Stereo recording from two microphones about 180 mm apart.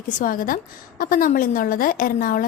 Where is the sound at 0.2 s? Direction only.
50° left (ahead or behind).